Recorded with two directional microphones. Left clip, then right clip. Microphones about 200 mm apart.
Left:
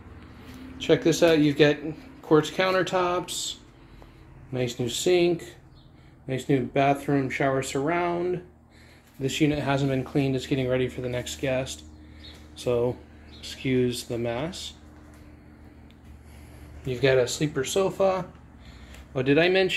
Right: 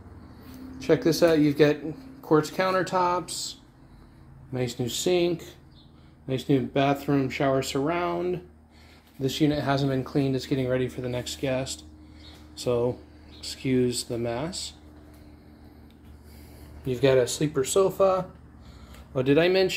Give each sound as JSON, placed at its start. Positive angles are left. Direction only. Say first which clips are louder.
{"t": 1.0, "sound": "speech", "louder": "even", "side_deg": -10}
{"t": 2.9, "sound": "a sound", "louder": "right 1 dB", "side_deg": -5}
{"t": 4.5, "sound": "speech", "louder": "left 1 dB", "side_deg": -10}
{"t": 16.8, "sound": "speech", "louder": "even", "side_deg": -20}